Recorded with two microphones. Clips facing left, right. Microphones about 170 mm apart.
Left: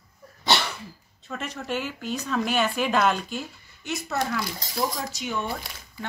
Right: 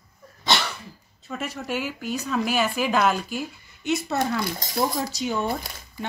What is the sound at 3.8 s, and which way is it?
Speech, 25° right (ahead or behind).